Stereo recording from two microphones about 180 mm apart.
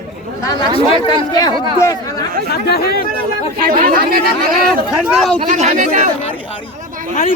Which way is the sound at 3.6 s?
50° right (ahead or behind).